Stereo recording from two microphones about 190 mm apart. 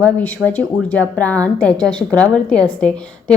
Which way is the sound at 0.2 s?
10° left (ahead or behind).